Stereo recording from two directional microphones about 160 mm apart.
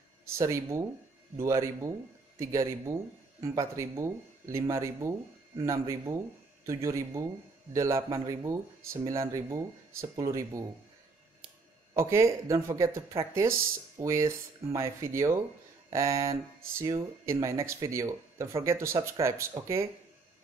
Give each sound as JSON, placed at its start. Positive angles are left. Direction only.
{"t": 0.4, "sound": "speech", "side_deg": -20}
{"t": 11.9, "sound": "speech", "side_deg": -15}